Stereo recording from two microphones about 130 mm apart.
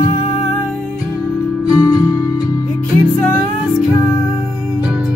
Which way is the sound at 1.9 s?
30° left (ahead or behind).